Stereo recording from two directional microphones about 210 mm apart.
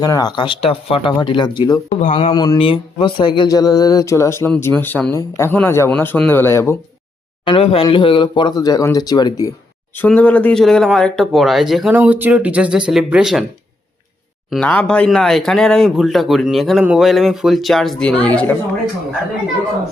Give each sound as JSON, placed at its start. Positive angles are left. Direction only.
{"t": 0.0, "sound": "speech", "side_deg": 20}
{"t": 7.4, "sound": "speech", "side_deg": 25}
{"t": 9.9, "sound": "speech", "side_deg": 10}
{"t": 14.5, "sound": "speech", "side_deg": 5}